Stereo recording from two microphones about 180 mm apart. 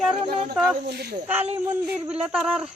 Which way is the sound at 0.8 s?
65° right (ahead or behind).